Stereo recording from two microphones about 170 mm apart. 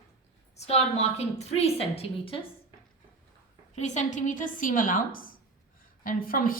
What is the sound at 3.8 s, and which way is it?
A woman's voice, 45° left (ahead or behind).